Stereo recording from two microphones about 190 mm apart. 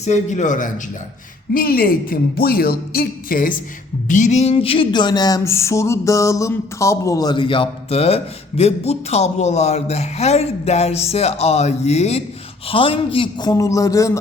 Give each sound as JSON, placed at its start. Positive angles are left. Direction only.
{"t": 0.0, "sound": "music", "side_deg": 40}
{"t": 1.5, "sound": "a woman's voice", "side_deg": 50}
{"t": 4.1, "sound": "music", "side_deg": 40}
{"t": 12.6, "sound": "a man's voice", "side_deg": 30}